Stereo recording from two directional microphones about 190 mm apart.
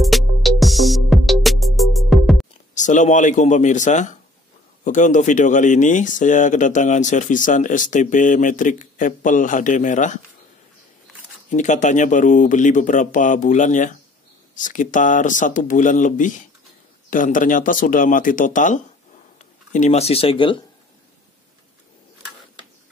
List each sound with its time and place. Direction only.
0.0 s music: centre (ahead or behind)
2.7 s speech: 40° left (ahead or behind)
11.5 s speech: 40° left (ahead or behind)